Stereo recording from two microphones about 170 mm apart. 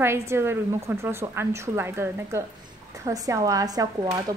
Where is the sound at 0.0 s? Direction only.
15° right (ahead or behind).